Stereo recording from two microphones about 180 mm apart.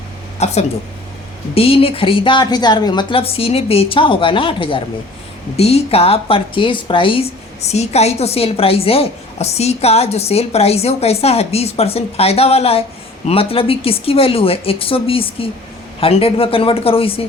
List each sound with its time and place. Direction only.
0.3 s a woman's voice: 40° left (ahead or behind)